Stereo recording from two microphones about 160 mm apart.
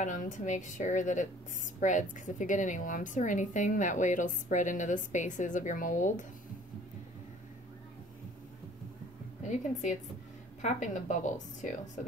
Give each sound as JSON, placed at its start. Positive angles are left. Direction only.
{"t": 0.0, "sound": "a woman's voice", "side_deg": 55}
{"t": 10.6, "sound": "a woman's voice", "side_deg": 50}